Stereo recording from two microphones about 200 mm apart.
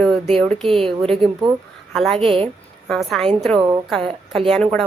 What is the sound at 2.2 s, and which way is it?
Speech, 25° right (ahead or behind).